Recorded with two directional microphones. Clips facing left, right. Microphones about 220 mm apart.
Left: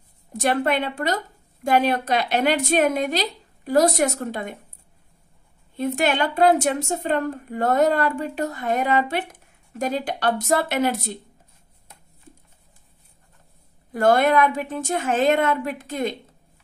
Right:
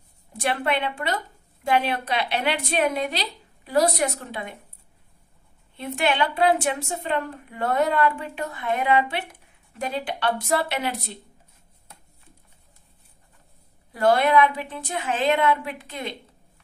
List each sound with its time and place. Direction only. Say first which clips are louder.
0.3 s a woman's voice: left 4 dB; 45° left (ahead or behind)
5.8 s a woman's voice: left 3 dB; 45° left (ahead or behind)
13.9 s a woman's voice: left 1 dB; 50° left (ahead or behind)